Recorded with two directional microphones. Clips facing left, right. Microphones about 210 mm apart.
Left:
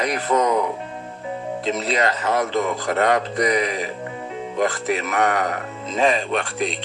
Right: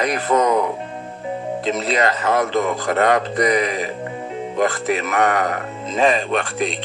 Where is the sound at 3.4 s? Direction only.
50° right (ahead or behind).